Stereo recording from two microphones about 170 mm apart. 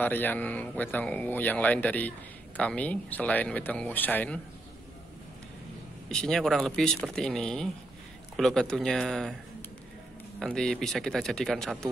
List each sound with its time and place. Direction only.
0.0 s speech: 10° left (ahead or behind)
6.0 s speech: 5° left (ahead or behind)
10.4 s speech: 5° left (ahead or behind)